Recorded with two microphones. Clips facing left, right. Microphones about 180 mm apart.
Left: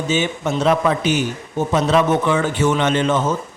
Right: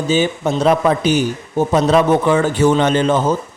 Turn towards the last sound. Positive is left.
turn(degrees=-35)  # may be behind; listen again after turning